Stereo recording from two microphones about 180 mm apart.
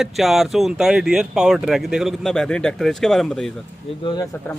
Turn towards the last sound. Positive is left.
turn(degrees=25)  # may be behind; listen again after turning